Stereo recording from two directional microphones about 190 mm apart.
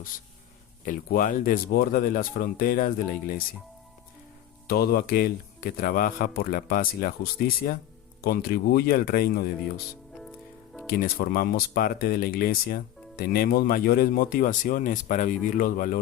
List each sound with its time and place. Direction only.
0.9 s speech: 45° left (ahead or behind)
4.7 s speech: 55° left (ahead or behind)
10.8 s speech: 50° left (ahead or behind)